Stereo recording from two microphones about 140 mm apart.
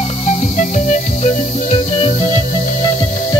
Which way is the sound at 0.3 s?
60° left (ahead or behind).